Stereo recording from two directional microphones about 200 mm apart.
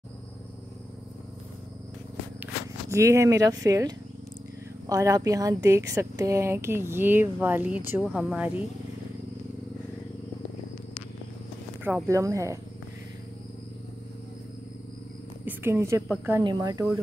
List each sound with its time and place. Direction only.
2.4 s speech: 15° right (ahead or behind)
11.8 s speech: 10° right (ahead or behind)
15.4 s a sound: 10° right (ahead or behind)
16.4 s speech: 20° right (ahead or behind)